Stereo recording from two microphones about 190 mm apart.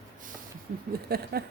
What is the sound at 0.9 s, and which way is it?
Speech, 55° right (ahead or behind).